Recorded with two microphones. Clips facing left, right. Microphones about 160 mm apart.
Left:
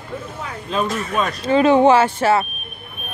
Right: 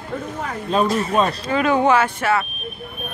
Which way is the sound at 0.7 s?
35° right (ahead or behind).